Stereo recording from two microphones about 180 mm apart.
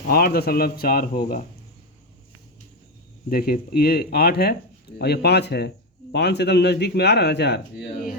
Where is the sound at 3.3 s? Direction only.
55° left (ahead or behind).